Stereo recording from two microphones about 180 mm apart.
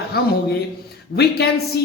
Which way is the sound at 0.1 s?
60° left (ahead or behind).